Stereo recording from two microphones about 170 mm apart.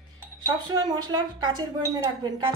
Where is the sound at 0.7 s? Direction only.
25° right (ahead or behind).